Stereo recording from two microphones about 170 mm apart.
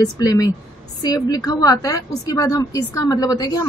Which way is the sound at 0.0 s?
20° left (ahead or behind).